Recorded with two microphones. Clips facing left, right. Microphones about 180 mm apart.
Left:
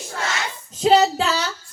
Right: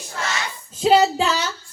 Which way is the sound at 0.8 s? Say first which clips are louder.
Even; 10° right (ahead or behind).